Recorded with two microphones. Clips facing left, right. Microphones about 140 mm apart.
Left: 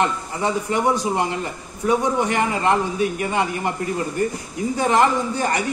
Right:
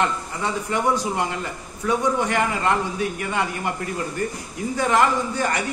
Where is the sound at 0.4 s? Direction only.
20° left (ahead or behind).